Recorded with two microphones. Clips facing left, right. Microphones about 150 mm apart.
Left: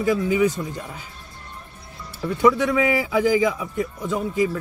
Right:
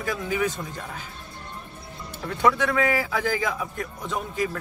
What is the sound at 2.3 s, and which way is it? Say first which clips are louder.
A man's voice: left 4 dB; 10° left (ahead or behind).